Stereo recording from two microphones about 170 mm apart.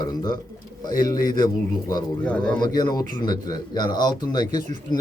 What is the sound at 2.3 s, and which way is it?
Speech, 5° left (ahead or behind).